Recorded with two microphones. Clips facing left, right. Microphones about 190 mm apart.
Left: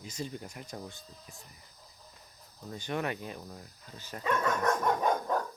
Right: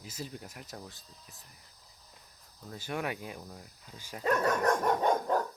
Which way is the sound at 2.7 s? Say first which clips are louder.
Left 2 dB; 5° right (ahead or behind).